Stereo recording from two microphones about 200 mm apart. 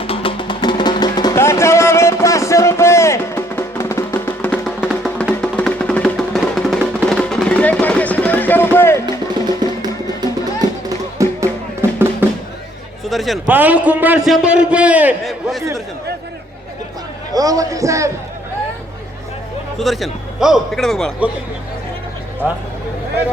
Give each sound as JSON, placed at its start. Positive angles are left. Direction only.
{"t": 0.0, "sound": "music", "side_deg": 25}
{"t": 9.6, "sound": "music", "side_deg": -20}
{"t": 13.1, "sound": "a man's voice", "side_deg": 0}
{"t": 17.3, "sound": "a man's voice", "side_deg": -20}
{"t": 19.8, "sound": "a man's voice", "side_deg": 0}